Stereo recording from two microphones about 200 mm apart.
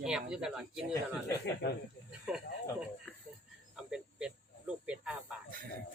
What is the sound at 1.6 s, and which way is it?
Speech, 60° left (ahead or behind).